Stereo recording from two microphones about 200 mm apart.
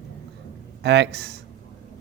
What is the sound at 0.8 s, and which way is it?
Speech, 60° right (ahead or behind).